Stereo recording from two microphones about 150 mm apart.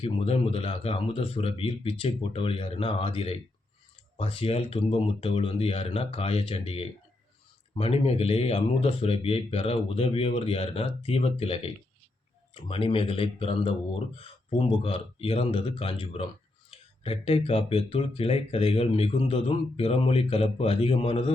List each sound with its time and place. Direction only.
0.0 s speech: 40° left (ahead or behind)